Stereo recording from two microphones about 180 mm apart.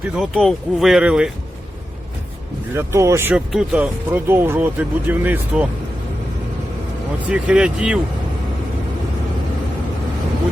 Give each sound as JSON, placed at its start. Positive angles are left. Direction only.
{"t": 0.2, "sound": "speech", "side_deg": 0}
{"t": 2.7, "sound": "speech", "side_deg": -15}
{"t": 7.3, "sound": "speech", "side_deg": -5}